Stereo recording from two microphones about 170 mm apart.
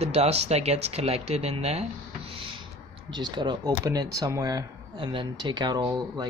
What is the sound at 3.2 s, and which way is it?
Speech, 25° right (ahead or behind).